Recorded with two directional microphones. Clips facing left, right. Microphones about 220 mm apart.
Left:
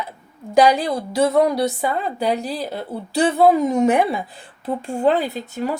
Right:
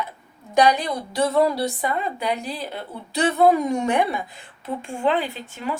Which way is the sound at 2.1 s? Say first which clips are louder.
Left 5 dB; 35° left (ahead or behind).